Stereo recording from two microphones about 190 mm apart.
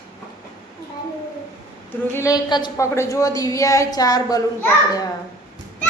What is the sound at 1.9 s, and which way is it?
A woman's voice, 15° left (ahead or behind).